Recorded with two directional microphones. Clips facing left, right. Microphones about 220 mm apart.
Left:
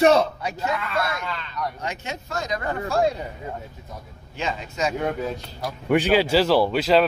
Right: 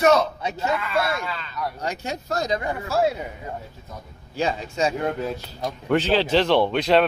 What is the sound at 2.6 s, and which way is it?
Speech, 5° right (ahead or behind).